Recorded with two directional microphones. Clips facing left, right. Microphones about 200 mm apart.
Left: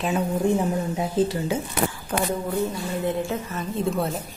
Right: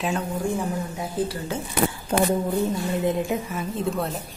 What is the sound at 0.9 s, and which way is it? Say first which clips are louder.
Speech: left 4 dB; 20° left (ahead or behind).